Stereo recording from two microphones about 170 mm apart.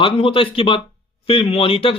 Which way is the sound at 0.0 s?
30° left (ahead or behind).